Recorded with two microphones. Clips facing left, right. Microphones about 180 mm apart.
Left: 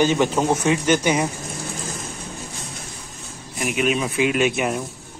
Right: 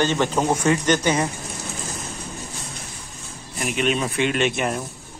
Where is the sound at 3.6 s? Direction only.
5° left (ahead or behind).